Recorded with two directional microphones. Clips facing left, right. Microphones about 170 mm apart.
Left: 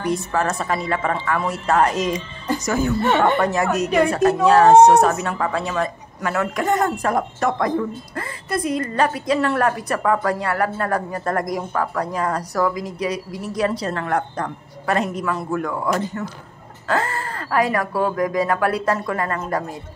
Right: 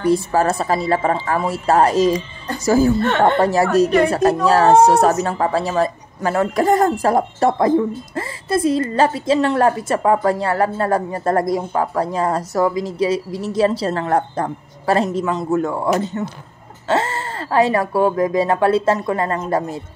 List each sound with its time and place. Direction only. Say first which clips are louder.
0.1 s a woman's voice: right 5 dB; 35° right (ahead or behind)